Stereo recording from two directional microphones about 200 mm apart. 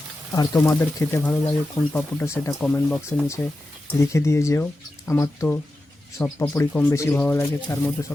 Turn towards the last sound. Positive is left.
turn(degrees=10)  # may be behind; listen again after turning